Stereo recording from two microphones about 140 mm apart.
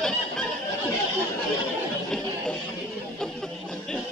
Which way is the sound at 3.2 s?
5° left (ahead or behind).